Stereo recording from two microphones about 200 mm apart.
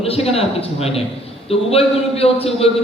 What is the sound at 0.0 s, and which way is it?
A man's voice, 30° left (ahead or behind).